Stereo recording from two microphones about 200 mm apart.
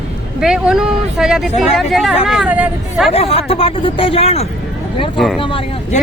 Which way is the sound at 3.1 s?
30° left (ahead or behind).